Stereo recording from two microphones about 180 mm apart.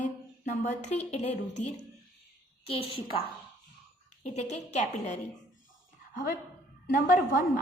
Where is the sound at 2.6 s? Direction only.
30° left (ahead or behind).